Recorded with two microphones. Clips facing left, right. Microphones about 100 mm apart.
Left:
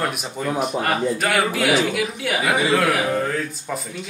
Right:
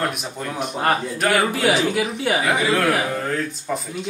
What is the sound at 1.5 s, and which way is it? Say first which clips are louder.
Speech: even; 35° right (ahead or behind).